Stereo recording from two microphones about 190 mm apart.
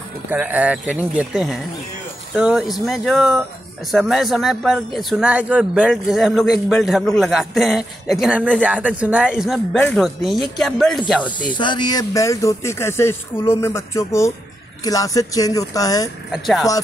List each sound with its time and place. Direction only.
0.3 s a man's voice: 10° right (ahead or behind)
11.5 s speech: 25° left (ahead or behind)
16.3 s a man's voice: centre (ahead or behind)